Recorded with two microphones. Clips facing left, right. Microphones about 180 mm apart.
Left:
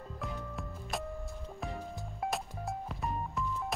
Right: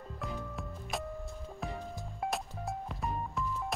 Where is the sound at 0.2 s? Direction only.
Centre (ahead or behind).